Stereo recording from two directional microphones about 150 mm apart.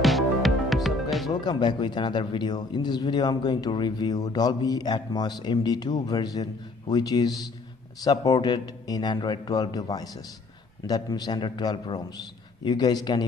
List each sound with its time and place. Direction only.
0.0 s music: centre (ahead or behind)
1.4 s speech: 30° left (ahead or behind)